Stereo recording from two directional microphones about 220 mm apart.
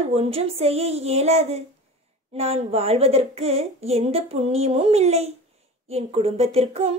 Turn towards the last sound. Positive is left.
turn(degrees=-30)  # may be behind; listen again after turning